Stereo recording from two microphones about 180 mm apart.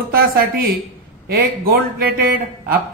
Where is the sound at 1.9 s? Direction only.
55° right (ahead or behind).